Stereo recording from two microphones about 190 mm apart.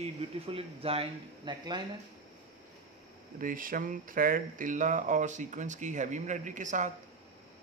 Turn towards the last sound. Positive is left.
turn(degrees=-40)  # may be behind; listen again after turning